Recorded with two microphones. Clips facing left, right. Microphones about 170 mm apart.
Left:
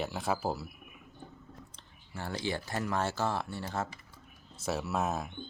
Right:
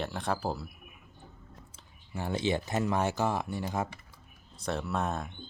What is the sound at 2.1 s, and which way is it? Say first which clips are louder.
Speech: right 5 dB; 20° right (ahead or behind).